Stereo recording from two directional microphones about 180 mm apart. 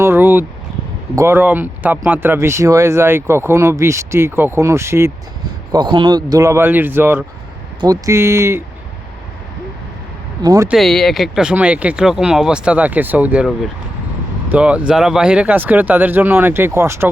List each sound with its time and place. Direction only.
0.0 s vehicle: 10° right (ahead or behind)
1.1 s speech: 15° right (ahead or behind)
5.7 s speech: 25° right (ahead or behind)
10.4 s speech: 20° right (ahead or behind)
10.7 s speech: centre (ahead or behind)
14.5 s speech: 5° right (ahead or behind)